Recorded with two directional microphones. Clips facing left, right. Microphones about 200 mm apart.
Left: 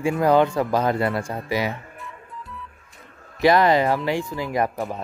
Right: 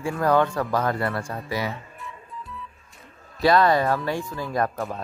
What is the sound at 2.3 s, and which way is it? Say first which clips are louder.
Music: even; centre (ahead or behind).